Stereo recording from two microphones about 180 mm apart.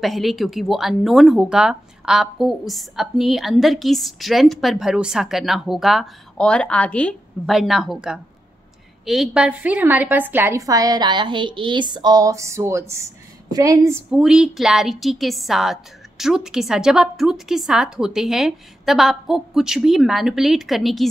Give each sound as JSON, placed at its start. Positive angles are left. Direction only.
{"t": 0.0, "sound": "a woman's voice", "side_deg": 0}
{"t": 14.1, "sound": "speech", "side_deg": -5}